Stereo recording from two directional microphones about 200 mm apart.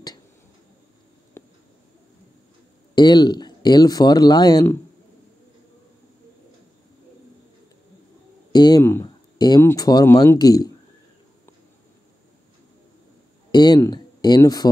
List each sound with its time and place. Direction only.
1.4 s a sound: 15° left (ahead or behind)
2.9 s speech: 20° left (ahead or behind)
8.5 s speech: 20° left (ahead or behind)
13.5 s speech: 20° left (ahead or behind)